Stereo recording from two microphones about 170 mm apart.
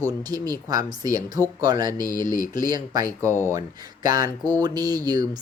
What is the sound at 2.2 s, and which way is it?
Speech, 50° left (ahead or behind).